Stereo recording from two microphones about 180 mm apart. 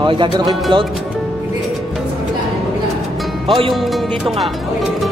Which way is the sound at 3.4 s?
30° right (ahead or behind).